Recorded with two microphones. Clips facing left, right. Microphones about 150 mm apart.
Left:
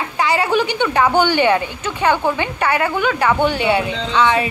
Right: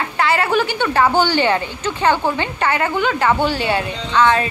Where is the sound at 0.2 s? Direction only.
15° left (ahead or behind).